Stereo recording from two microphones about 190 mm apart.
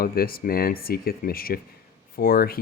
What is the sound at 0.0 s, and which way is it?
Speech, 50° left (ahead or behind).